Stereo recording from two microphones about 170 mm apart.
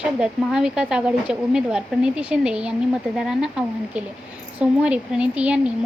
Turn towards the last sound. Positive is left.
turn(degrees=-5)  # may be behind; listen again after turning